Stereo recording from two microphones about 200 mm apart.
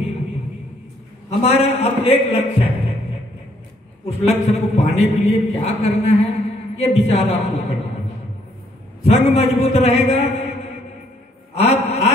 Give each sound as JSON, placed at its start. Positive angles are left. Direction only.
{"t": 1.4, "sound": "a man's voice", "side_deg": 30}
{"t": 4.0, "sound": "a man's voice", "side_deg": 35}
{"t": 9.0, "sound": "a man's voice", "side_deg": 30}
{"t": 11.5, "sound": "a sound", "side_deg": 30}